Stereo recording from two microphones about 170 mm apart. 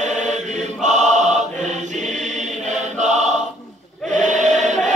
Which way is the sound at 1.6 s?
45° right (ahead or behind).